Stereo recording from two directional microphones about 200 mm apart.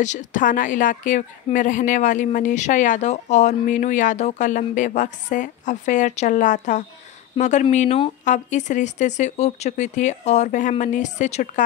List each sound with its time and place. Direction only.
0.0 s a woman's voice: 40° left (ahead or behind)